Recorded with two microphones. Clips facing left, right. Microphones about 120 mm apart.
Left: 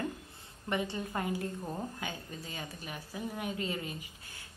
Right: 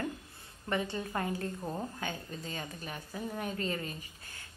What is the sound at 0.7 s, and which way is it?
A woman's voice, 15° left (ahead or behind).